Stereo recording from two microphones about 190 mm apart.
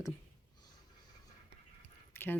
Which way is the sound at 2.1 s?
10° left (ahead or behind).